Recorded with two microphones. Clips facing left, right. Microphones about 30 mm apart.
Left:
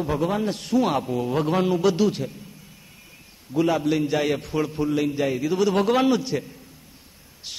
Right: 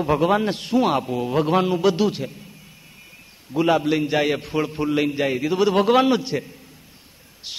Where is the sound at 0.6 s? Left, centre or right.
Right.